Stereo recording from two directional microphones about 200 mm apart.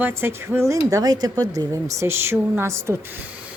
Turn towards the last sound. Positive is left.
turn(degrees=-15)  # may be behind; listen again after turning